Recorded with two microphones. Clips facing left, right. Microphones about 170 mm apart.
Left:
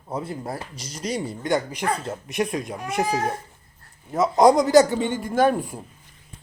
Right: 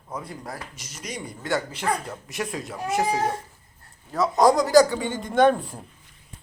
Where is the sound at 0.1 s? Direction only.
25° left (ahead or behind).